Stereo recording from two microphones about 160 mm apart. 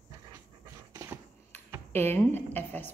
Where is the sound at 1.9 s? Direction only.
15° left (ahead or behind).